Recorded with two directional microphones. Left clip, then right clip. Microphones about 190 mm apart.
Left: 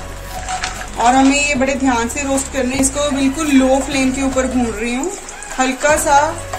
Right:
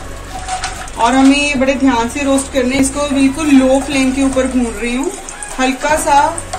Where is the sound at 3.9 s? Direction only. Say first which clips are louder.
Right 3 dB; 55° left (ahead or behind).